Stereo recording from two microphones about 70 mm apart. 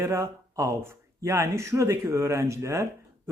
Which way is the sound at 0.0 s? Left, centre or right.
Right.